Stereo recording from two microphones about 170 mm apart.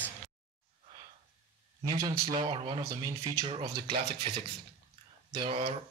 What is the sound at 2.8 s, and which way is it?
Speech, 15° right (ahead or behind).